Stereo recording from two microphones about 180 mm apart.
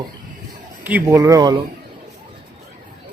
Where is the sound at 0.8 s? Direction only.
10° right (ahead or behind).